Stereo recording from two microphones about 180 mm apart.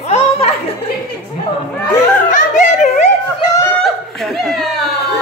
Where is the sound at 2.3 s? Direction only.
45° left (ahead or behind).